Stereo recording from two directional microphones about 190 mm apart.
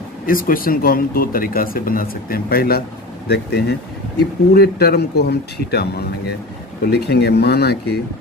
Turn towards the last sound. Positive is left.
turn(degrees=60)  # may be behind; listen again after turning